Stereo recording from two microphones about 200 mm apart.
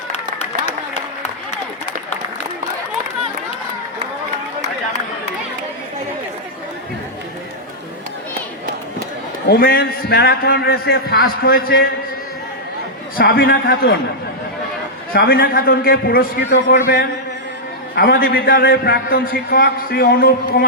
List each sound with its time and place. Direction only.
9.5 s a man's voice: 50° left (ahead or behind)
13.1 s a man's voice: 50° left (ahead or behind)
15.1 s a man's voice: 50° left (ahead or behind)